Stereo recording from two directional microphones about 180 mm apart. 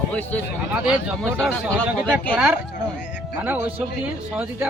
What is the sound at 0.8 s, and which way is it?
Speech, centre (ahead or behind).